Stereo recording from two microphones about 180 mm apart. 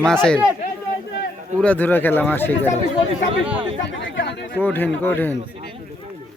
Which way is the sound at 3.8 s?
75° left (ahead or behind).